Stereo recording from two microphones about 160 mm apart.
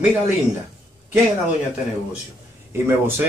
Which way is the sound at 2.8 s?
15° right (ahead or behind).